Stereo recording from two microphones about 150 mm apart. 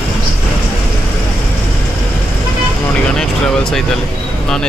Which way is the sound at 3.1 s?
5° left (ahead or behind).